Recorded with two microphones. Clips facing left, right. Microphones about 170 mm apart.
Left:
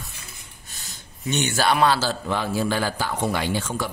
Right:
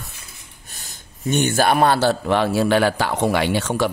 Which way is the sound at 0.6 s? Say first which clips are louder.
Right 2 dB; 50° right (ahead or behind).